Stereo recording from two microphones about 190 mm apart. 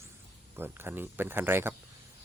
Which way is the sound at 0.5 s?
10° right (ahead or behind).